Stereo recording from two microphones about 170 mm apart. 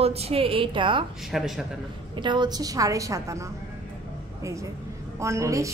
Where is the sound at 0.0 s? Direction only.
35° right (ahead or behind).